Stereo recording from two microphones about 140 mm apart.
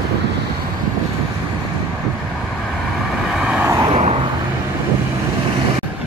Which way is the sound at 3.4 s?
5° right (ahead or behind).